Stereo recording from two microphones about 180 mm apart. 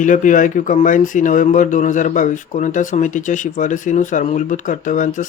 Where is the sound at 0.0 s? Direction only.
45° left (ahead or behind).